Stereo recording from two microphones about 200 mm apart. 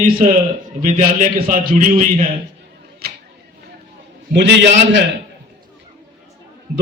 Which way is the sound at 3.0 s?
50° right (ahead or behind).